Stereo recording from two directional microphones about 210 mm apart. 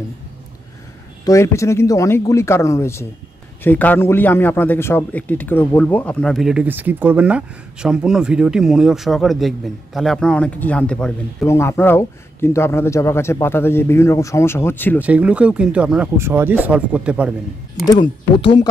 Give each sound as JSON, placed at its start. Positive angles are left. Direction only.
{"t": 1.2, "sound": "a man's voice", "side_deg": 15}
{"t": 15.0, "sound": "speech", "side_deg": -5}
{"t": 17.8, "sound": "speech", "side_deg": 25}